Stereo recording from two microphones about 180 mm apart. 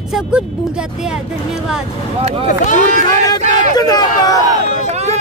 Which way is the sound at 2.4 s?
45° left (ahead or behind).